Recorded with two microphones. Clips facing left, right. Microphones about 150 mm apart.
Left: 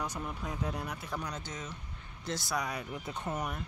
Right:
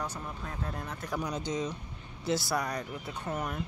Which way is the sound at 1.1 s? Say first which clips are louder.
Right 10 dB; 10° right (ahead or behind).